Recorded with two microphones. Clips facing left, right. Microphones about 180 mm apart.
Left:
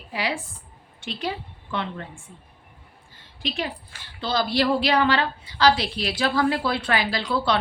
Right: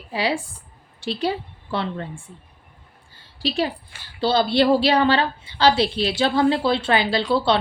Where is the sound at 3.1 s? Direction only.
35° right (ahead or behind).